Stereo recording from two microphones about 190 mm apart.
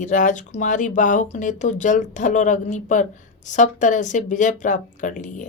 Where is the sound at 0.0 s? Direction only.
40° left (ahead or behind).